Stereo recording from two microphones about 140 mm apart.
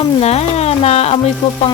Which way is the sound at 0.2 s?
50° left (ahead or behind).